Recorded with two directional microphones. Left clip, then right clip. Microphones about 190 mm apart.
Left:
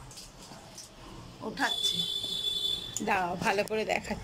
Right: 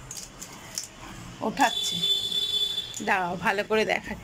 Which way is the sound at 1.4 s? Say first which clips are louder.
Right 6 dB; 25° right (ahead or behind).